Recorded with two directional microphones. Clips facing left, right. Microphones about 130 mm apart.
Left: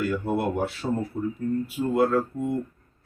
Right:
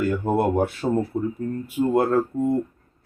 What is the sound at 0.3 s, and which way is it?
Speech, 50° right (ahead or behind).